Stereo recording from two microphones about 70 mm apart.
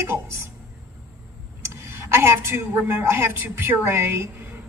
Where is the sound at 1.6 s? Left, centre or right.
Right.